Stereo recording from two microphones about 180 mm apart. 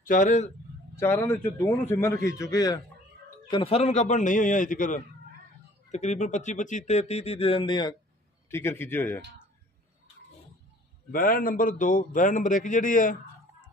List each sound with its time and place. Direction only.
0.0 s a man's voice: 45° left (ahead or behind)
0.9 s a man's voice: 15° left (ahead or behind)
8.5 s a man's voice: 15° left (ahead or behind)
11.1 s a man's voice: 50° left (ahead or behind)